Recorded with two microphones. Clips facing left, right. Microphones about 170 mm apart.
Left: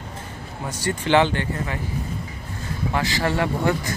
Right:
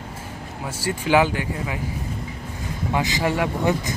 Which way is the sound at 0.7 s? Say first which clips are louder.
Even; 5° right (ahead or behind).